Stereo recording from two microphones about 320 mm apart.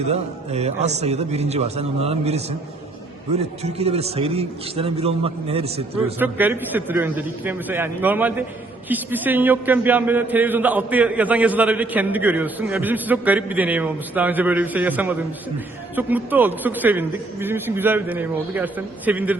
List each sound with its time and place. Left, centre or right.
0.1 s a man's voice: centre
3.6 s a man's voice: centre
6.1 s a man's voice: centre